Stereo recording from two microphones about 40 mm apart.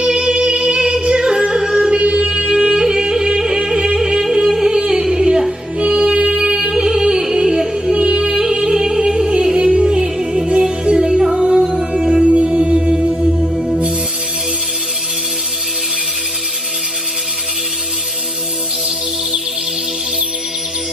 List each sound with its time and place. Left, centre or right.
0.0 s music: right
7.9 s music: right